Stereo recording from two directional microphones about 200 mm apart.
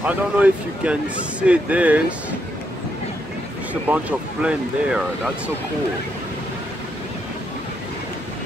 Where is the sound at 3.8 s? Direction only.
5° right (ahead or behind).